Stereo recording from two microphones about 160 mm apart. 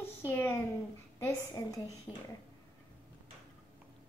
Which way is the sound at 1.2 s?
20° left (ahead or behind).